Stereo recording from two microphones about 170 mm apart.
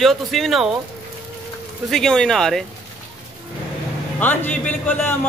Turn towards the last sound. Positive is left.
turn(degrees=10)  # may be behind; listen again after turning